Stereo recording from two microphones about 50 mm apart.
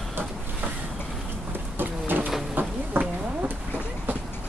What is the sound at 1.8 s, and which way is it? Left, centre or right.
Bird, right.